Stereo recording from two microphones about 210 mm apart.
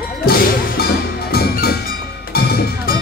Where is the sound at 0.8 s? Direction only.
50° left (ahead or behind).